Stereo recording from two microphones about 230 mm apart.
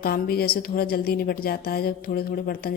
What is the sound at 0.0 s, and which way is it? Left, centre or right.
A woman's voice, left.